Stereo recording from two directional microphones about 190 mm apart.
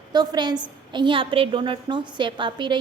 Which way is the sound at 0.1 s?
20° right (ahead or behind).